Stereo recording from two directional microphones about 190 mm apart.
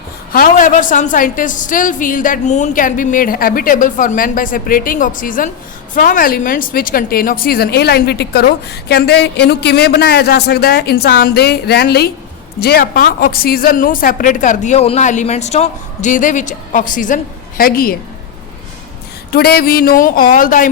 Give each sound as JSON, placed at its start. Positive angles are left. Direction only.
{"t": 0.3, "sound": "a woman's voice", "side_deg": 45}
{"t": 19.3, "sound": "a woman's voice", "side_deg": 55}